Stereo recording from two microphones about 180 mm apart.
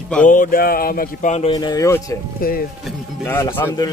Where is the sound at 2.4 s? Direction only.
55° left (ahead or behind).